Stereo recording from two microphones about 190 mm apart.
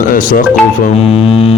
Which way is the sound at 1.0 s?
30° left (ahead or behind).